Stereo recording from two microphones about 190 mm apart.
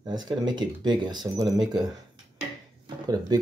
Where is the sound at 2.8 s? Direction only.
20° right (ahead or behind).